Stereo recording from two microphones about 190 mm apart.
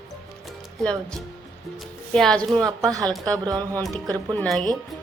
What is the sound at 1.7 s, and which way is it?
Speech, centre (ahead or behind).